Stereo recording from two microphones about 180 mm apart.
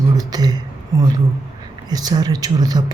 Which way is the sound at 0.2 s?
20° right (ahead or behind).